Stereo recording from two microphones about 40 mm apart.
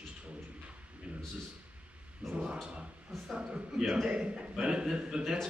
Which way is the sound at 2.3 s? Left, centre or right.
Right.